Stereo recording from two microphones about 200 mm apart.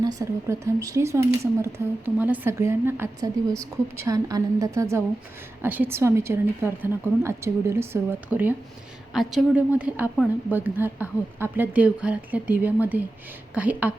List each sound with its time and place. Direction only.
0.0 s a woman's voice: 15° right (ahead or behind)